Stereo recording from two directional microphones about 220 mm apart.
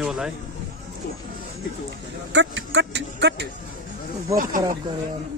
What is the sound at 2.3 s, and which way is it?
Speech, 55° right (ahead or behind).